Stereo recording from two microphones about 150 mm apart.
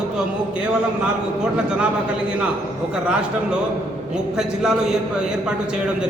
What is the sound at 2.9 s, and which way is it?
A man's voice, 5° right (ahead or behind).